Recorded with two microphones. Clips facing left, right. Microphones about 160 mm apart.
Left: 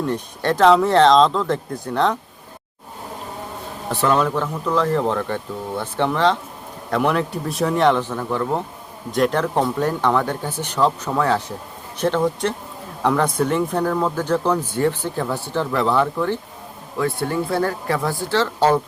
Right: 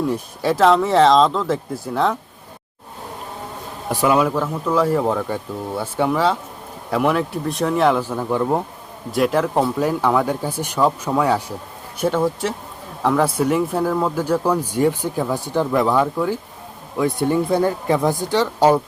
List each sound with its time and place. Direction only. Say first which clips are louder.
0.0 s speech: right 2 dB; 5° right (ahead or behind)
3.8 s speech: right 2 dB; 10° right (ahead or behind)
9.1 s speech: right 1 dB; 5° right (ahead or behind)